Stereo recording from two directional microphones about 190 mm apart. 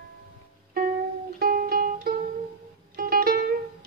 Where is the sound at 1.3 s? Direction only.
50° right (ahead or behind).